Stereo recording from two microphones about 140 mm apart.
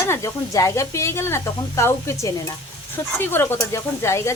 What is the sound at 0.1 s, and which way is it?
Speech, 20° left (ahead or behind).